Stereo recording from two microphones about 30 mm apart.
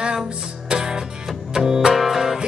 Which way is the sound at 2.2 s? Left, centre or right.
Centre.